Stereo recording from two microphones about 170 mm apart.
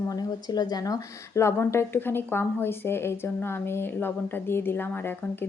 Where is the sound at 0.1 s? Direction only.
20° left (ahead or behind).